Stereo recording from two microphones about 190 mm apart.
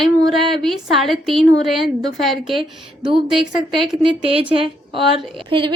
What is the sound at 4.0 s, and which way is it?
A woman's voice, 30° right (ahead or behind).